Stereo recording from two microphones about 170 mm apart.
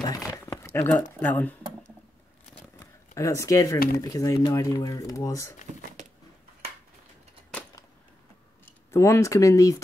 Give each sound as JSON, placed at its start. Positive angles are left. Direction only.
{"t": 0.3, "sound": "crumpling", "side_deg": 15}
{"t": 1.2, "sound": "speech", "side_deg": 10}
{"t": 2.8, "sound": "speech", "side_deg": 20}
{"t": 8.9, "sound": "speech", "side_deg": 15}